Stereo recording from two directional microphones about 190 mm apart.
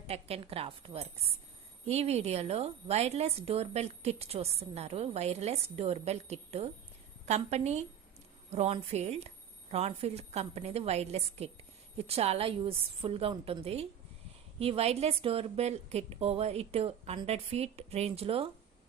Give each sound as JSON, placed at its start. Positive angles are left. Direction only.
{"t": 0.1, "sound": "a woman's voice", "side_deg": -30}